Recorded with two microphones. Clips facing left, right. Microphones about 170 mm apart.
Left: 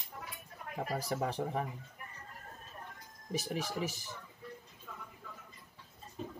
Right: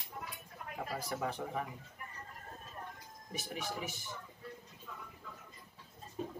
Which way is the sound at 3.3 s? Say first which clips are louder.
Left 5 dB; 35° left (ahead or behind).